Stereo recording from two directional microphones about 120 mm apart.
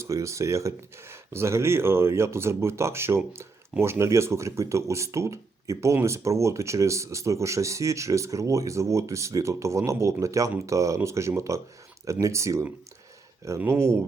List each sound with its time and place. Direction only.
0.0 s speech: 25° right (ahead or behind)